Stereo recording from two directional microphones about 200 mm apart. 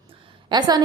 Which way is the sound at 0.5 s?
20° right (ahead or behind).